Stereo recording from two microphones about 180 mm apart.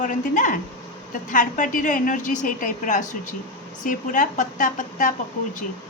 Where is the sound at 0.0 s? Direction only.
45° left (ahead or behind).